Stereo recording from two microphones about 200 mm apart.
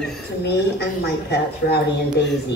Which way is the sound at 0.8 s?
55° left (ahead or behind).